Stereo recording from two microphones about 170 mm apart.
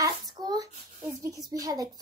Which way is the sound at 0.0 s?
20° right (ahead or behind).